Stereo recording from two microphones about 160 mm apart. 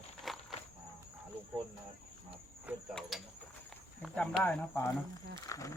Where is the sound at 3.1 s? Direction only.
Centre (ahead or behind).